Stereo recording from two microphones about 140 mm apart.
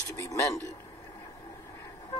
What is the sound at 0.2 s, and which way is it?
Speech, 20° left (ahead or behind).